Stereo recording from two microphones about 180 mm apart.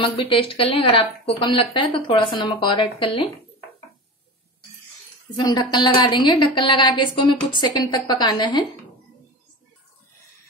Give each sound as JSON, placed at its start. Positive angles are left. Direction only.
{"t": 0.0, "sound": "speech", "side_deg": 30}
{"t": 5.3, "sound": "speech", "side_deg": 25}